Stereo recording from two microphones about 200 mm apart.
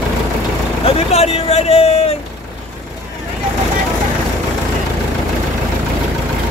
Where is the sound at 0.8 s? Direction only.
30° left (ahead or behind).